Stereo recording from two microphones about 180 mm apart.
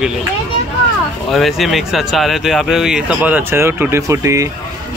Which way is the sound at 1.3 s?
Centre (ahead or behind).